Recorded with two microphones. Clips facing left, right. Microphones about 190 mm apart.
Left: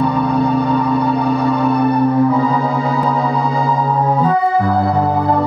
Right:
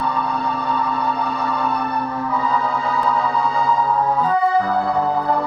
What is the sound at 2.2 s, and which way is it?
Organ, 35° left (ahead or behind).